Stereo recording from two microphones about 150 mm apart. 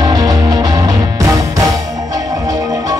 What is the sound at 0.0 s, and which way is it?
Music, 25° right (ahead or behind).